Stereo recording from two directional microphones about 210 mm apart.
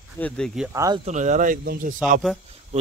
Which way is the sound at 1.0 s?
35° right (ahead or behind).